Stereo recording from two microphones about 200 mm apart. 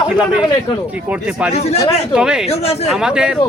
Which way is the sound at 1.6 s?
30° left (ahead or behind).